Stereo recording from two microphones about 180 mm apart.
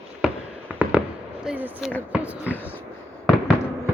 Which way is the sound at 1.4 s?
5° right (ahead or behind).